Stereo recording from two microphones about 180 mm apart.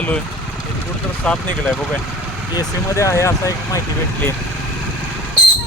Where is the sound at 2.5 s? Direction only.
15° left (ahead or behind).